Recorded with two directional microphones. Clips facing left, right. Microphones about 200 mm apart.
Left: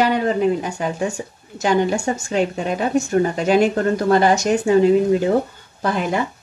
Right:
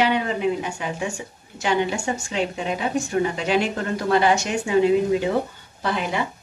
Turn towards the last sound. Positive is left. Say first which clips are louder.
# left 4 dB
turn(degrees=45)  # may be behind; listen again after turning